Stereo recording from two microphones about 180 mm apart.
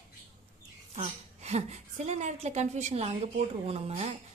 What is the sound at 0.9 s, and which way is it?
A woman's voice, 35° right (ahead or behind).